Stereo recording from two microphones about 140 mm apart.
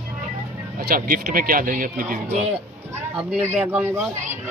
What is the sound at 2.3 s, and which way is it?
Speech, 50° right (ahead or behind).